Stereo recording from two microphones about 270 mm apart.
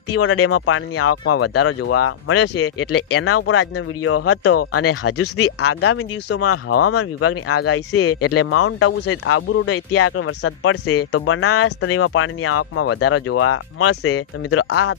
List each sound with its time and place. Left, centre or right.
0.1 s speech: left